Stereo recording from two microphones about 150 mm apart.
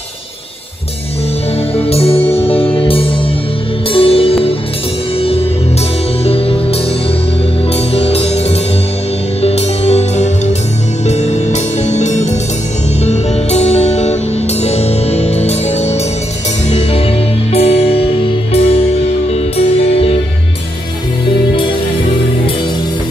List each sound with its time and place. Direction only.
1.8 s music: 40° left (ahead or behind)
6.2 s music: 40° left (ahead or behind)